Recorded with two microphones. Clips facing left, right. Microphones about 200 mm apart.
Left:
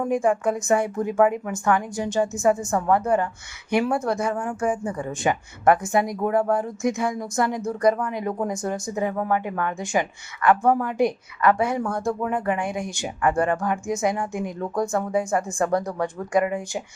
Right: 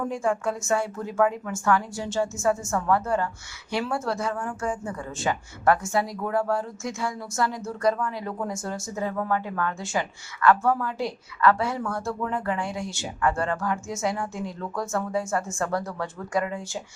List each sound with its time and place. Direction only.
0.0 s a woman's voice: 15° left (ahead or behind)